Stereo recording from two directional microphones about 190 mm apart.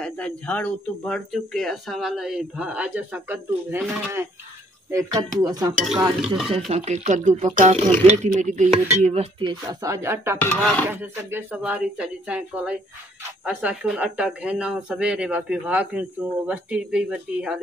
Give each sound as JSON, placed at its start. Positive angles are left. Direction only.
{"t": 0.0, "sound": "speech", "side_deg": 5}
{"t": 4.9, "sound": "dishes", "side_deg": -20}
{"t": 6.2, "sound": "speech", "side_deg": 0}
{"t": 6.7, "sound": "speech", "side_deg": -35}
{"t": 8.4, "sound": "dishes", "side_deg": -40}
{"t": 10.4, "sound": "chopping", "side_deg": 10}
{"t": 10.9, "sound": "speech", "side_deg": -10}